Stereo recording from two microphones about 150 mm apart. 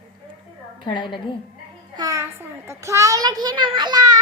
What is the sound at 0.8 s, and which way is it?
Speech, 30° left (ahead or behind).